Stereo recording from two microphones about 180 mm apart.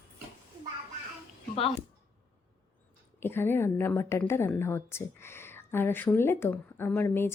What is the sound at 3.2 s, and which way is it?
A woman's voice, 10° left (ahead or behind).